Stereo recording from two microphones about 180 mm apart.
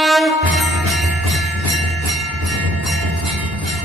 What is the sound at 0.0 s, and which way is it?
Jingle bell, centre (ahead or behind).